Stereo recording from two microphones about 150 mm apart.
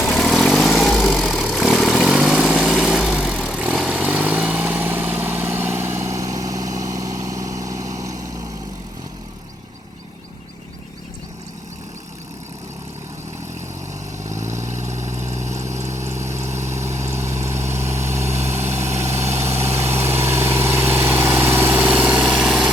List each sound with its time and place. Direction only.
0.0 s vehicle: centre (ahead or behind); by 8.2 s 20° right (ahead or behind)
14.6 s vehicle: 50° right (ahead or behind)
15.5 s vehicle: 20° right (ahead or behind)
17.1 s vehicle: 15° right (ahead or behind)
18.2 s vehicle: 45° right (ahead or behind)
19.7 s vehicle: 15° right (ahead or behind)
21.8 s engine: 5° right (ahead or behind)